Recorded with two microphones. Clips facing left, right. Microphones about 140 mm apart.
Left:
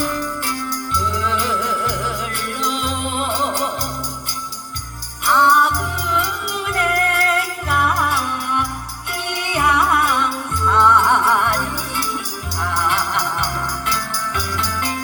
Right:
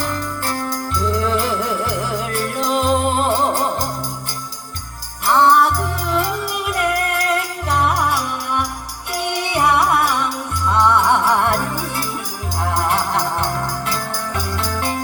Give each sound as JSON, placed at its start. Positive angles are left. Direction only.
{"t": 0.1, "sound": "music", "side_deg": -45}
{"t": 5.3, "sound": "music", "side_deg": -30}
{"t": 6.7, "sound": "music", "side_deg": -20}
{"t": 9.1, "sound": "music", "side_deg": -25}
{"t": 11.3, "sound": "music", "side_deg": -35}